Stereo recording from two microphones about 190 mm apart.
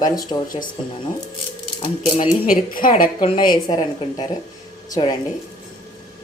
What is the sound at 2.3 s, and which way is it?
Speech, 45° left (ahead or behind).